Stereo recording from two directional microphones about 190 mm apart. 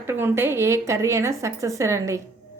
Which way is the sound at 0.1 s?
10° right (ahead or behind).